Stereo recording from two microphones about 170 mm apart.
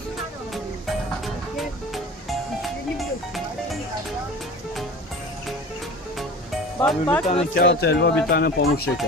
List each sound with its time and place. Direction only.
1.2 s music: centre (ahead or behind)
6.8 s speech: 10° left (ahead or behind)
7.5 s speech: 70° left (ahead or behind)
8.3 s speech: 70° left (ahead or behind)